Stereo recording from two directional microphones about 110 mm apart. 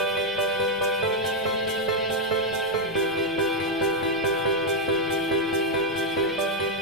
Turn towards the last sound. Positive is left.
turn(degrees=0)  # may be behind; listen again after turning